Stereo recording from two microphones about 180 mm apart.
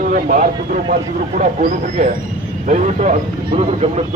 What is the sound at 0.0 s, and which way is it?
Speech, 50° right (ahead or behind).